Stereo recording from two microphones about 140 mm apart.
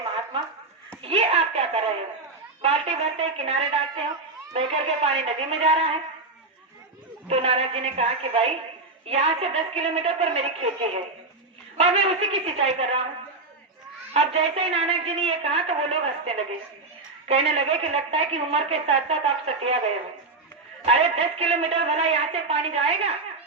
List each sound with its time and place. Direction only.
0.0 s a sound: 40° right (ahead or behind)
1.0 s slap: 45° right (ahead or behind)
2.6 s a woman's voice: 45° right (ahead or behind)
7.3 s a woman's voice: 45° right (ahead or behind)
14.1 s a woman's voice: 45° right (ahead or behind)
20.8 s a woman's voice: 45° right (ahead or behind)